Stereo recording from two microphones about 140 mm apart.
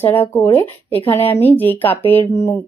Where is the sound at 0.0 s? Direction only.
15° left (ahead or behind).